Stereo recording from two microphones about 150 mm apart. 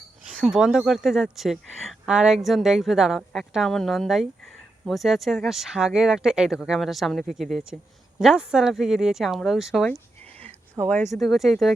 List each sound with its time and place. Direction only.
0.3 s speech: centre (ahead or behind)
10.8 s speech: 30° right (ahead or behind)
11.2 s speech: centre (ahead or behind)